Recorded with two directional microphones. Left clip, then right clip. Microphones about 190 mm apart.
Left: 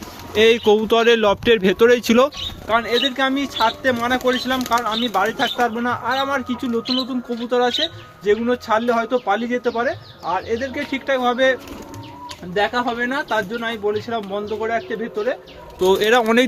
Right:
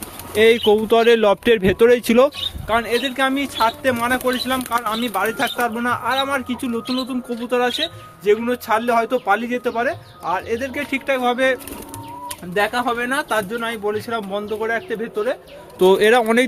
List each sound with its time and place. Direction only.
0.3 s speech: centre (ahead or behind)
2.8 s speech: 5° left (ahead or behind)
12.5 s speech: 5° right (ahead or behind)
16.0 s speech: 25° right (ahead or behind)
16.2 s speech: centre (ahead or behind)